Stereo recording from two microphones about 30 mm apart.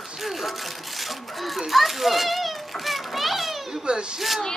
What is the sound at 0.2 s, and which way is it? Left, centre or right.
A child's voice, centre.